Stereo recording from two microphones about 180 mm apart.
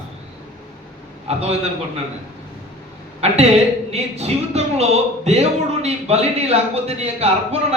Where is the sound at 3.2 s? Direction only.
35° right (ahead or behind).